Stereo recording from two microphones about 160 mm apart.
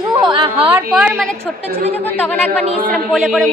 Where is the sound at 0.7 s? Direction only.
5° right (ahead or behind).